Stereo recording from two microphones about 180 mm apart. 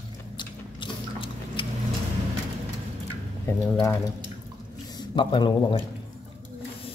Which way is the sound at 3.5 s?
15° left (ahead or behind).